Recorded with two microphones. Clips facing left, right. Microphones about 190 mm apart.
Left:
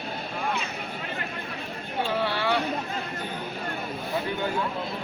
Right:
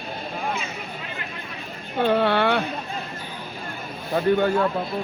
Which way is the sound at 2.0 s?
60° right (ahead or behind).